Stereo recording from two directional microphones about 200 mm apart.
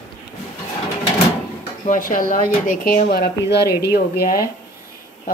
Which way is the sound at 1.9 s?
40° left (ahead or behind).